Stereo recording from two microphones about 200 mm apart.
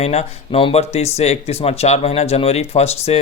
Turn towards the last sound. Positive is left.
turn(degrees=30)  # may be behind; listen again after turning